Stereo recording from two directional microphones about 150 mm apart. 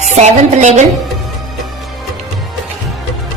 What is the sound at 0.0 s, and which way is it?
Speech, 50° right (ahead or behind).